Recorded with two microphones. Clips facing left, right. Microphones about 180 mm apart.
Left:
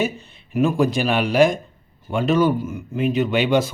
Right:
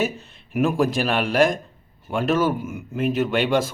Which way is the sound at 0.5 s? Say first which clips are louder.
Left 2 dB; centre (ahead or behind).